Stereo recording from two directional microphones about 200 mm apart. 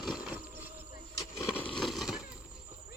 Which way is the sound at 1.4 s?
10° left (ahead or behind).